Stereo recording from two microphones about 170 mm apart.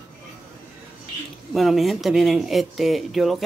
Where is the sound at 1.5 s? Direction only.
Centre (ahead or behind).